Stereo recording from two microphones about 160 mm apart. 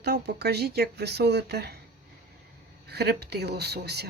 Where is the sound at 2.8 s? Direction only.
85° right.